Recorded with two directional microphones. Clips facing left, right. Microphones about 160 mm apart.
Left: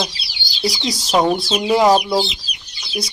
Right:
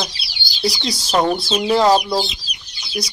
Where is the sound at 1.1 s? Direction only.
10° left (ahead or behind).